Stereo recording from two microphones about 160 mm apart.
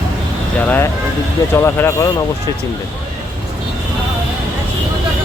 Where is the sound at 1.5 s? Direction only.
15° left (ahead or behind).